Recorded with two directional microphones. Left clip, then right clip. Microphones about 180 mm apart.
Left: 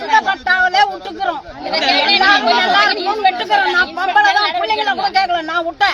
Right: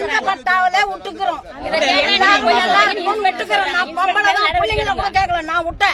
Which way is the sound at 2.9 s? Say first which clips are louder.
Left 1 dB; 10° right (ahead or behind).